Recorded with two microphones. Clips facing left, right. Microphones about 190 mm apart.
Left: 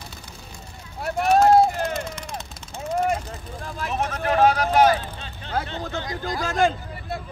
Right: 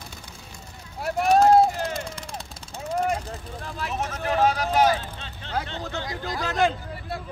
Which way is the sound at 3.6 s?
40° left (ahead or behind).